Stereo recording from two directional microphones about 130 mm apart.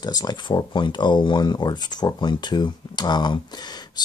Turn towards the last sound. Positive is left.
turn(degrees=35)  # may be behind; listen again after turning